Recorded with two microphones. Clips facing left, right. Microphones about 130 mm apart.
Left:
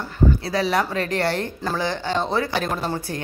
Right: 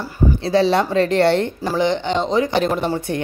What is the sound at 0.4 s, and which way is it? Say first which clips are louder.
Speech: right 6 dB; 25° right (ahead or behind).